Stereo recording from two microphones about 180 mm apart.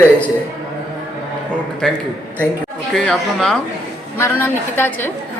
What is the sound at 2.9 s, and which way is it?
Speech, centre (ahead or behind).